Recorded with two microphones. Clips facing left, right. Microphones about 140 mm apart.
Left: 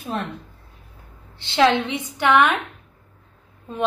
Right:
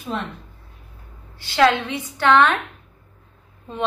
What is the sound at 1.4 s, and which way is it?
A woman's voice, 20° left (ahead or behind).